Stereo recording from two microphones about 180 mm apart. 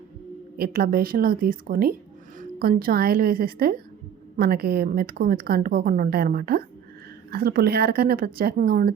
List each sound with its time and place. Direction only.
0.5 s a woman's voice: 55° right (ahead or behind)